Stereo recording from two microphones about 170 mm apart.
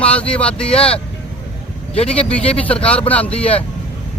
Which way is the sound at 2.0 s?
5° left (ahead or behind).